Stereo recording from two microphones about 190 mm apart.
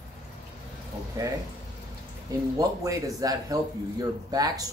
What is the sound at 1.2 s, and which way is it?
Speech, 15° right (ahead or behind).